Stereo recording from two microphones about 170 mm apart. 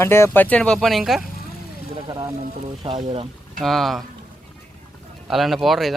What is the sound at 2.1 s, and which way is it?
Speech, 25° right (ahead or behind).